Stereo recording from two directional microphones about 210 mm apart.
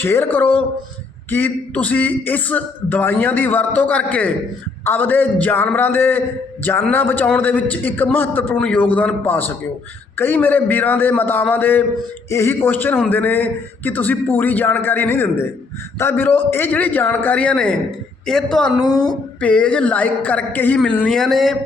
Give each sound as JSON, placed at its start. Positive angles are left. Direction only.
{"t": 0.0, "sound": "a man's voice", "side_deg": 10}
{"t": 18.8, "sound": "a woman's voice", "side_deg": 20}
{"t": 19.4, "sound": "a woman's voice", "side_deg": 5}